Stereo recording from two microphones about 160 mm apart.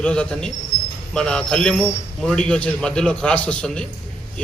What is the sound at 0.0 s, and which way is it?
A man's voice, 5° left (ahead or behind).